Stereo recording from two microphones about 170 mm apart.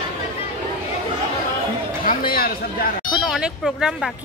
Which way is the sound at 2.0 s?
55° left (ahead or behind).